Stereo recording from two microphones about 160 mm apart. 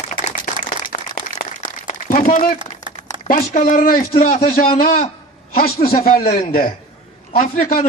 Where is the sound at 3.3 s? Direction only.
60° left (ahead or behind).